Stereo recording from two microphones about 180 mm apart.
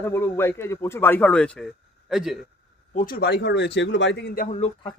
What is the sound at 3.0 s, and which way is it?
Speech, 55° left (ahead or behind).